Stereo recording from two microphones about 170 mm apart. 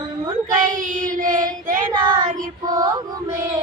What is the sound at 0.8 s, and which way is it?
Child singing, 50° right (ahead or behind).